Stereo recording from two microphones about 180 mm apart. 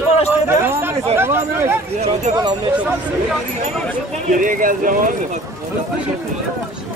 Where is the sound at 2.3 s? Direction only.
40° right (ahead or behind).